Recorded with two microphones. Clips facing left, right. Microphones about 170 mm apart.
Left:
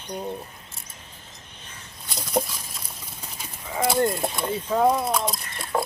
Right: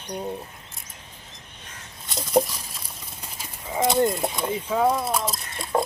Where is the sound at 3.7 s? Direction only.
20° right (ahead or behind); by 5.6 s centre (ahead or behind).